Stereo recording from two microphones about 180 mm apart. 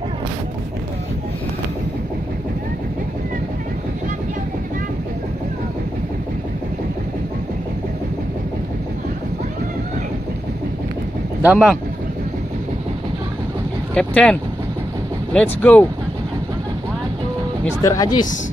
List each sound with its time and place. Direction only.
11.4 s speech: 5° right (ahead or behind)
13.9 s speech: 5° left (ahead or behind)
17.8 s speech: 20° left (ahead or behind)